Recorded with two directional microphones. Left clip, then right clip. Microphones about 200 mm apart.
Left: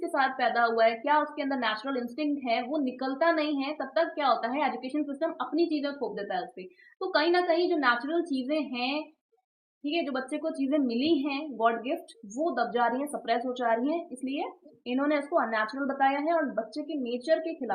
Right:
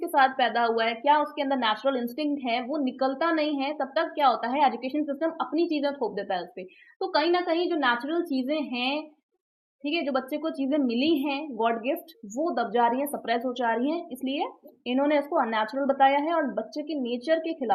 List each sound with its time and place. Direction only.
0.1 s a woman's voice: 40° right (ahead or behind)